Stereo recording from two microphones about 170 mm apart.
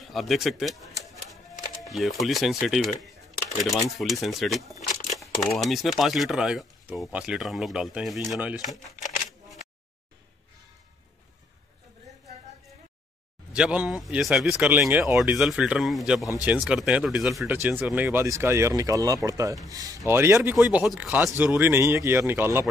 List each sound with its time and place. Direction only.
0.1 s speech: centre (ahead or behind)
4.0 s speech: centre (ahead or behind)
8.5 s crumpling: 45° left (ahead or behind)
13.5 s speech: 5° right (ahead or behind)
20.5 s speech: 5° right (ahead or behind)